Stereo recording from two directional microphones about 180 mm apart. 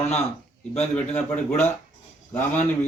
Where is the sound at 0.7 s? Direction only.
35° left (ahead or behind).